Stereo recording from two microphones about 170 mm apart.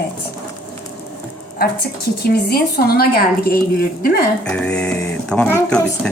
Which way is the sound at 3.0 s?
60° left (ahead or behind).